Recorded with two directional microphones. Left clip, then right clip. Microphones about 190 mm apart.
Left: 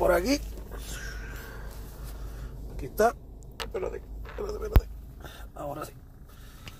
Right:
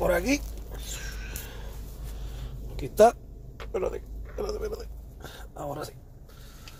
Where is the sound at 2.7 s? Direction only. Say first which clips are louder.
Right 6 dB; 40° right (ahead or behind).